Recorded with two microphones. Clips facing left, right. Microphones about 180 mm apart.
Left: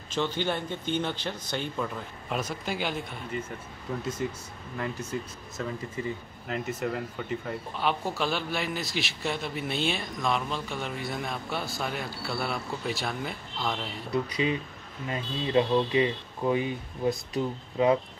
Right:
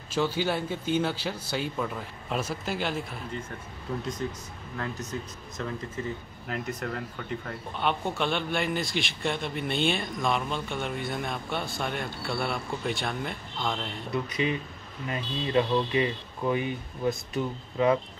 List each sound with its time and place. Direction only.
0.1 s speech: 10° right (ahead or behind)
5.6 s speech: 5° left (ahead or behind)
6.4 s speech: centre (ahead or behind)
14.1 s speech: 30° left (ahead or behind)